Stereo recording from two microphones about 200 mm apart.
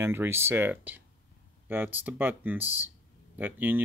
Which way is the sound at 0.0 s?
10° right (ahead or behind).